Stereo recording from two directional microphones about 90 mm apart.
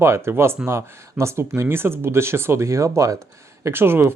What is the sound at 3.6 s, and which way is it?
Speech, 25° right (ahead or behind).